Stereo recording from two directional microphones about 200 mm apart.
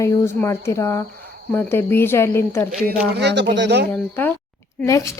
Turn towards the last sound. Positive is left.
turn(degrees=15)  # may be behind; listen again after turning